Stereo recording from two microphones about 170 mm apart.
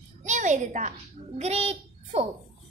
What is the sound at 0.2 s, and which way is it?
A child's voice, 45° right (ahead or behind).